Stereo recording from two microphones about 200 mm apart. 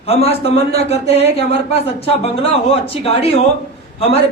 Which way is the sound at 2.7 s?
30° left (ahead or behind).